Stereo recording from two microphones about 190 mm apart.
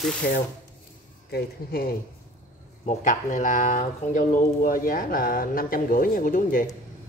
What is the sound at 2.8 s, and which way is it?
Speech, 40° left (ahead or behind).